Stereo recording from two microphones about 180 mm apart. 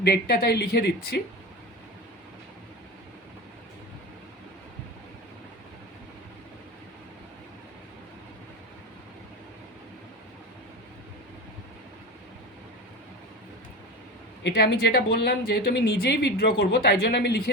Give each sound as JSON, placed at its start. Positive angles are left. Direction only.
{"t": 0.0, "sound": "speech", "side_deg": 65}
{"t": 14.4, "sound": "speech", "side_deg": 70}